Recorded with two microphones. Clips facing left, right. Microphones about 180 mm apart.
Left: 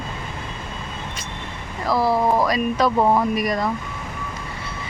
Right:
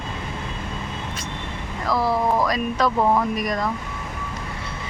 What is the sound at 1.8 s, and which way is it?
Speech, 5° left (ahead or behind).